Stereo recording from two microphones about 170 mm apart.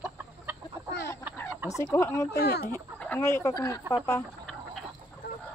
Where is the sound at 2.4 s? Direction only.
70° left (ahead or behind).